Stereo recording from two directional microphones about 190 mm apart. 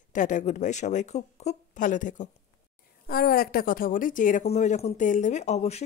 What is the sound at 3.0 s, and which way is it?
Speech, 50° left (ahead or behind).